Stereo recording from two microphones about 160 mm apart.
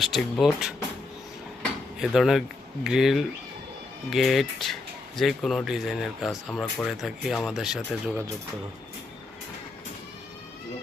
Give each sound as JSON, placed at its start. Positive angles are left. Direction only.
{"t": 0.0, "sound": "speech", "side_deg": 0}
{"t": 2.0, "sound": "speech", "side_deg": 0}